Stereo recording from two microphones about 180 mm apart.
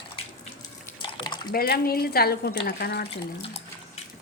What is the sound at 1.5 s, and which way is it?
Speech, 55° left (ahead or behind).